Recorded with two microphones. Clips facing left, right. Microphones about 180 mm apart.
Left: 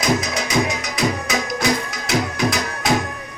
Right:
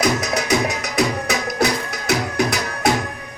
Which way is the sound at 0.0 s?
65° right (ahead or behind).